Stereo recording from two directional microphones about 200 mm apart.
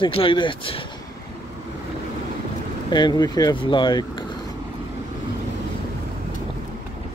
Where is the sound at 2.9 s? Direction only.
20° left (ahead or behind).